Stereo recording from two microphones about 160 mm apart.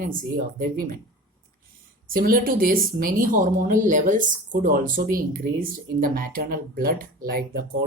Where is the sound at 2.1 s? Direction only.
60° right (ahead or behind).